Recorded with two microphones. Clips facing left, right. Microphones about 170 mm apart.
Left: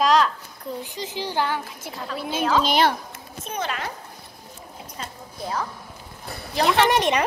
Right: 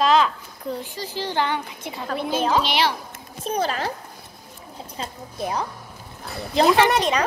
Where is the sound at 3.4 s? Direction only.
35° right (ahead or behind).